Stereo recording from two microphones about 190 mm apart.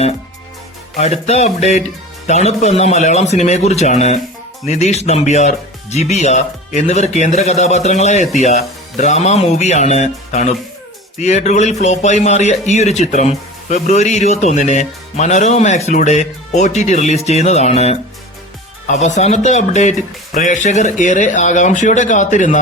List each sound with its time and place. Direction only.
0.9 s a man's voice: 35° left (ahead or behind)